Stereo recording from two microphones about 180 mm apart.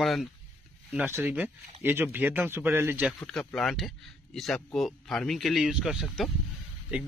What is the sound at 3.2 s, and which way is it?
Speech, centre (ahead or behind).